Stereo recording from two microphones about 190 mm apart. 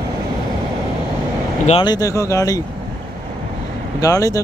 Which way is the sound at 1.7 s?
25° left (ahead or behind).